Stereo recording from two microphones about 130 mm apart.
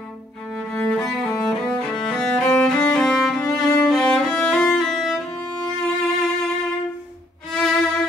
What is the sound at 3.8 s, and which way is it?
Music, 5° left (ahead or behind).